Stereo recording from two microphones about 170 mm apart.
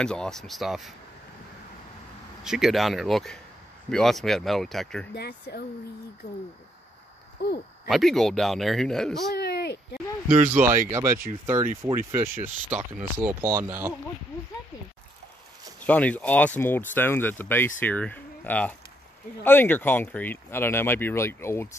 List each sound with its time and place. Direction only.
0.0 s speech: 5° left (ahead or behind)
2.4 s speech: centre (ahead or behind)
5.1 s speech: 75° left (ahead or behind)
7.4 s speech: 80° left
7.9 s speech: centre (ahead or behind)
9.3 s a sound: 70° left (ahead or behind)
10.6 s speech: 55° right (ahead or behind)
10.9 s speech: 15° right (ahead or behind)
15.8 s speech: 10° left (ahead or behind)